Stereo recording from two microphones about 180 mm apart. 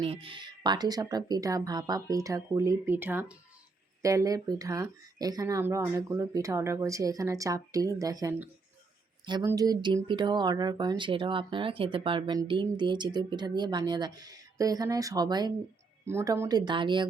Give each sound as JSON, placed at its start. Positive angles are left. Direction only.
{"t": 0.0, "sound": "speech", "side_deg": -30}